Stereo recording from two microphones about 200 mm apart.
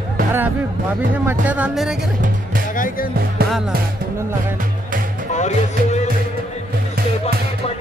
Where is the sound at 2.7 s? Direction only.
40° left (ahead or behind).